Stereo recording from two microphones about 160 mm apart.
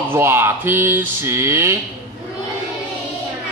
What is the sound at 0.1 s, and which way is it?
Speech, 15° right (ahead or behind).